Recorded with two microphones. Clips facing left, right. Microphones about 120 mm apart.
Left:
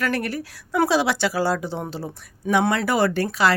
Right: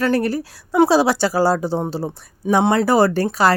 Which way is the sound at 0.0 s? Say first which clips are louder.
Right 6 dB; 30° right (ahead or behind).